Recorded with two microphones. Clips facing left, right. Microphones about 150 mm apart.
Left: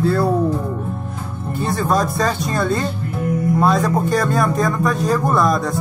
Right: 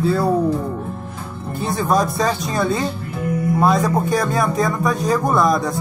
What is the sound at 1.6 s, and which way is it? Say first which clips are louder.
Speech: even; centre (ahead or behind).